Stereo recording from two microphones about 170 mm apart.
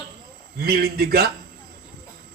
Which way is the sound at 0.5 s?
65° right (ahead or behind).